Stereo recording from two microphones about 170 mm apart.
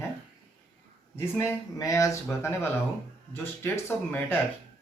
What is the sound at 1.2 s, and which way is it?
Speech, 15° left (ahead or behind).